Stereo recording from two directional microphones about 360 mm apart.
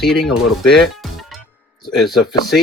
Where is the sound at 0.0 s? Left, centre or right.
Centre.